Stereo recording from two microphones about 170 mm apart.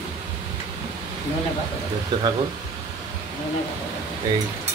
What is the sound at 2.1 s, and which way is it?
Speech, 25° right (ahead or behind).